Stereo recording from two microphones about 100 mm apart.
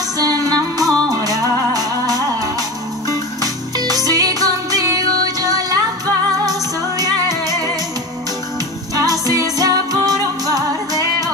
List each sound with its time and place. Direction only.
0.2 s music: 40° right (ahead or behind)
3.7 s music: 40° right (ahead or behind)
7.0 s music: 40° right (ahead or behind)
8.9 s music: 40° right (ahead or behind)